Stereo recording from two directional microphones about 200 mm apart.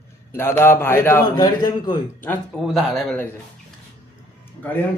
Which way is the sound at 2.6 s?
Centre (ahead or behind).